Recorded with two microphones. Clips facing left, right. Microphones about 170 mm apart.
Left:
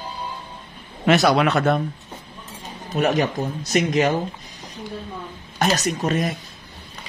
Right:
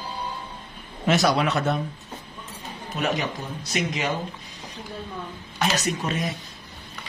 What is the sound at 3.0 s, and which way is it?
Speech, 45° left (ahead or behind).